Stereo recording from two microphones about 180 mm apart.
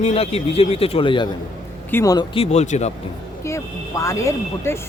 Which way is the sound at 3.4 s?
15° left (ahead or behind).